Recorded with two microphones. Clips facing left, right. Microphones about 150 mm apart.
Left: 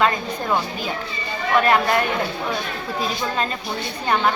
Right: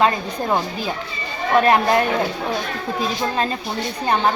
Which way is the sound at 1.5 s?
30° right (ahead or behind).